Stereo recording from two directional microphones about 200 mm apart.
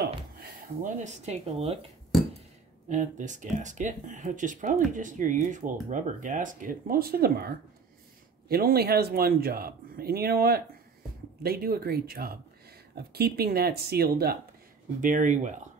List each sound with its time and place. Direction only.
0.0 s speech: 45° right (ahead or behind); by 1.8 s 30° right (ahead or behind)
2.9 s speech: 40° right (ahead or behind)
15.0 s speech: 40° right (ahead or behind)